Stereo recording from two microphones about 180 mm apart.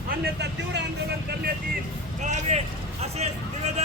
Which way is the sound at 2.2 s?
40° right (ahead or behind).